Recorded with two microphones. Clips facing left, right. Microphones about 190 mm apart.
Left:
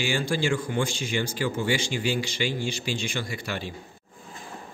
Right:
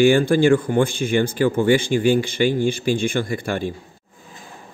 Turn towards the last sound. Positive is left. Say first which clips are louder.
# right 9 dB
turn(degrees=-50)  # may be behind; listen again after turning